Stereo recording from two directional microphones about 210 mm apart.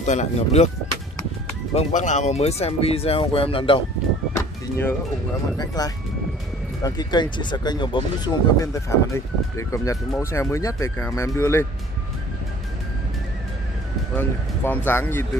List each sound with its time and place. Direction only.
0.0 s speech: 35° left (ahead or behind)
1.7 s speech: 30° left (ahead or behind)
4.4 s a sound: 10° left (ahead or behind)
5.8 s speech: 20° left (ahead or behind)
14.1 s speech: 10° left (ahead or behind)